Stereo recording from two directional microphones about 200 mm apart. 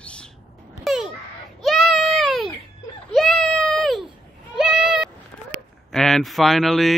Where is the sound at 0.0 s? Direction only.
5° left (ahead or behind).